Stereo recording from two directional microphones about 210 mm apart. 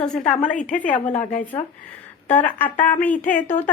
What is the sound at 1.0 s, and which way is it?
Speech, 35° left (ahead or behind).